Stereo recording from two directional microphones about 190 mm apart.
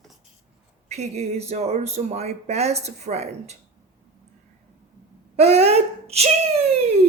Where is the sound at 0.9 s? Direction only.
35° right (ahead or behind).